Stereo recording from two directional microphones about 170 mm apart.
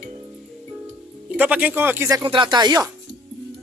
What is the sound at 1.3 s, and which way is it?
Speech, 10° right (ahead or behind).